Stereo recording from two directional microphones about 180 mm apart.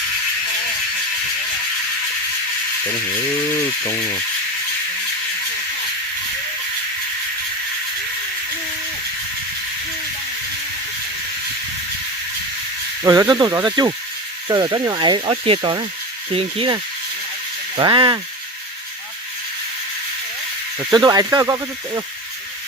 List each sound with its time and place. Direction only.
3.8 s a sound: 20° left (ahead or behind)
13.0 s speech: 20° right (ahead or behind)
20.9 s speech: 25° right (ahead or behind)